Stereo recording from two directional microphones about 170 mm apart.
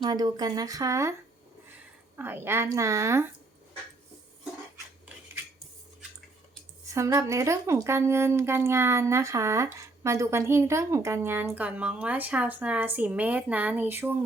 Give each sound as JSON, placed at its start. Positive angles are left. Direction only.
{"t": 0.0, "sound": "speech", "side_deg": -25}
{"t": 2.1, "sound": "speech", "side_deg": -15}
{"t": 6.8, "sound": "speech", "side_deg": -20}